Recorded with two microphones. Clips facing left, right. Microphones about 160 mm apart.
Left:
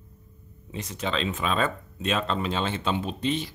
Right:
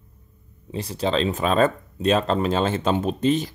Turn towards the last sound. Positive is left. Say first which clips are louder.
# right 7 dB
turn(degrees=-45)  # may be behind; listen again after turning